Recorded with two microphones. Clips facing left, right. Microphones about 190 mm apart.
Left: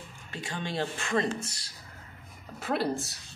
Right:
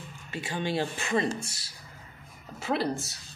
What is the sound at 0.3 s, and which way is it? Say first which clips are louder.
Speech: right 4 dB; 5° right (ahead or behind).